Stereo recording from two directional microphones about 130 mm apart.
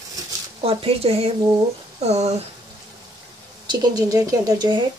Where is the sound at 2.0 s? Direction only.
55° right (ahead or behind).